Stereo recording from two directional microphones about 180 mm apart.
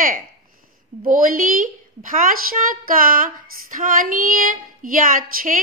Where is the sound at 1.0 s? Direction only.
50° right (ahead or behind).